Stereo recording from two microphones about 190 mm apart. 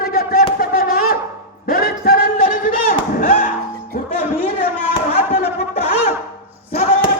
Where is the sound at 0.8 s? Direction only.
50° left (ahead or behind).